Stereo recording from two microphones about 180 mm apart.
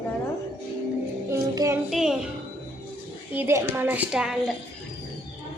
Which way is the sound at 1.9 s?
Centre (ahead or behind).